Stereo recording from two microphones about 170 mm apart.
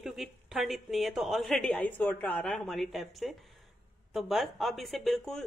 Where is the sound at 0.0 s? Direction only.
Centre (ahead or behind).